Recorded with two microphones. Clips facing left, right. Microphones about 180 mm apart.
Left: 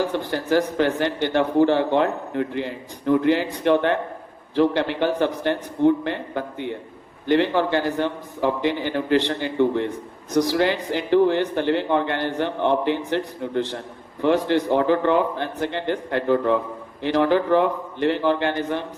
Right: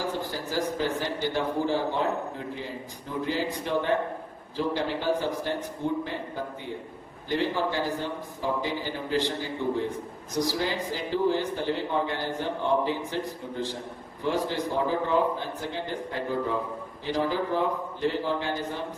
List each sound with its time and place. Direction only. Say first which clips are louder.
0.1 s speech: left 9 dB; 70° left (ahead or behind)